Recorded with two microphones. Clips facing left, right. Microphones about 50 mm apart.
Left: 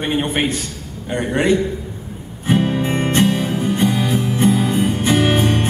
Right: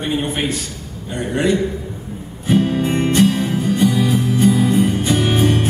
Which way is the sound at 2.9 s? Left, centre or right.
Left.